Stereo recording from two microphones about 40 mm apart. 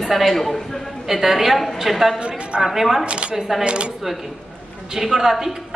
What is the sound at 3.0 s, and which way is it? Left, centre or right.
Speech, right.